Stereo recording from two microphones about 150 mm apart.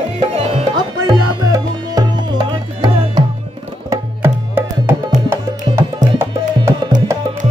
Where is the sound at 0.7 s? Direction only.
30° right (ahead or behind).